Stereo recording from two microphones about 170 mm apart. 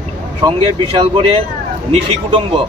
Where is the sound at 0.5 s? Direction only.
30° right (ahead or behind).